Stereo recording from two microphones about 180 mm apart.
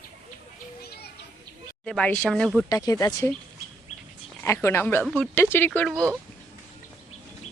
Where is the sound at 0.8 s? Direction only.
60° left (ahead or behind).